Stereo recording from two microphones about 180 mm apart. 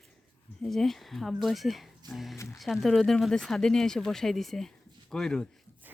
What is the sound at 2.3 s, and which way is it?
Speech, 15° left (ahead or behind).